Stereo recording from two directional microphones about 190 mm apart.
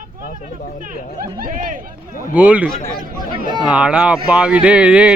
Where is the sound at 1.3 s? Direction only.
45° right (ahead or behind).